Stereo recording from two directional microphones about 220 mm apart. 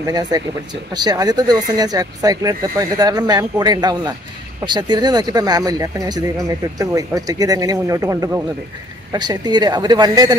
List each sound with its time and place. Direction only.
0.0 s speech: 15° right (ahead or behind)